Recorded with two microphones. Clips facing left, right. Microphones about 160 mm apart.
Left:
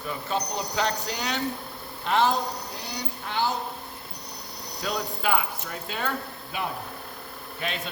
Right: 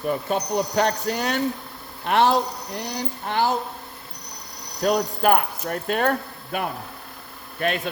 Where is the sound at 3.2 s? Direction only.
50° right (ahead or behind).